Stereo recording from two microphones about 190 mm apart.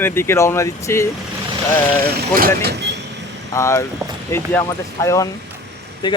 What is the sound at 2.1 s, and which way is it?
Speech, 50° right (ahead or behind).